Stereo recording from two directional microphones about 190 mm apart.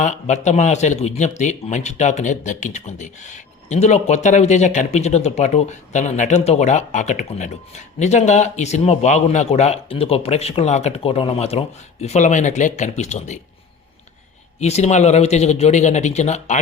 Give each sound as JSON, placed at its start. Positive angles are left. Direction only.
{"t": 0.0, "sound": "speech", "side_deg": 40}
{"t": 14.6, "sound": "speech", "side_deg": 35}